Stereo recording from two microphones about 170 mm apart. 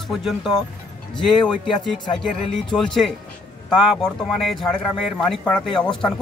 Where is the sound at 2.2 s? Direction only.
Centre (ahead or behind).